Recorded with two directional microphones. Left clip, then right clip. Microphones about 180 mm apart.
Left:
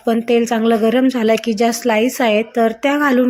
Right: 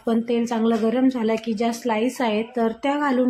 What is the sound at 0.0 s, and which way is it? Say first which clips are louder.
A woman's voice: left 8 dB; 15° left (ahead or behind).